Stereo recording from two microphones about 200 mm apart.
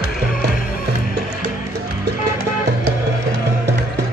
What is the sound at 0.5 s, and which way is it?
Music, 45° left (ahead or behind).